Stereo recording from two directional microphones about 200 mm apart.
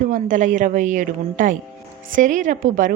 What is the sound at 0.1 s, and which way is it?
Speech, 40° right (ahead or behind).